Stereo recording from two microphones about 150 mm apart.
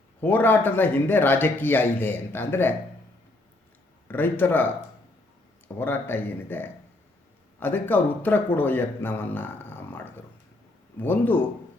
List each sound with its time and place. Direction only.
0.2 s a man's voice: 10° left (ahead or behind)
4.1 s a man's voice: 15° left (ahead or behind)